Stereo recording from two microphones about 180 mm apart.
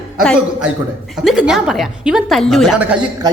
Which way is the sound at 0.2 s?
Centre (ahead or behind).